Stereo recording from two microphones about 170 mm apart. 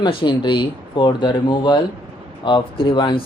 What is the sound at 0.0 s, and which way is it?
Speech, 30° left (ahead or behind).